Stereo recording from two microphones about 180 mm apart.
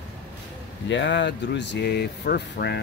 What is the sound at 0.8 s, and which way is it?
Speech, 80° left.